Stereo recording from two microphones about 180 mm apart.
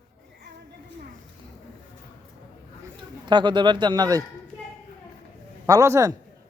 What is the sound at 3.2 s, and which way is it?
Speech, 25° right (ahead or behind).